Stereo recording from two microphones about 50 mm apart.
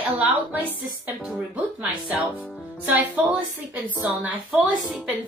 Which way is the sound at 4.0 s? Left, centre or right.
Right.